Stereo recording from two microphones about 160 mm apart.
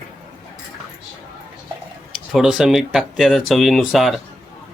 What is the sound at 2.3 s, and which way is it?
Speech, 5° right (ahead or behind).